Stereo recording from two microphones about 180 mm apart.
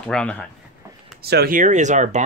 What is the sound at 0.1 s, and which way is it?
Speech, 5° left (ahead or behind).